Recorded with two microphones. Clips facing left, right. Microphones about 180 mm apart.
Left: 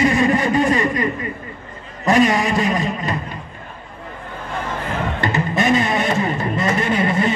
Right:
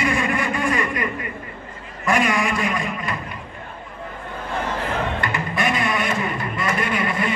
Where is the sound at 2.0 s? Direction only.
40° left (ahead or behind).